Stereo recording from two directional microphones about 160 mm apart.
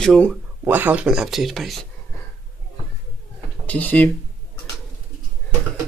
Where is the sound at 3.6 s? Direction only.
10° left (ahead or behind).